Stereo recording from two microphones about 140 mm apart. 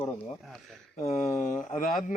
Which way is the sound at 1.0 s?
60° left (ahead or behind).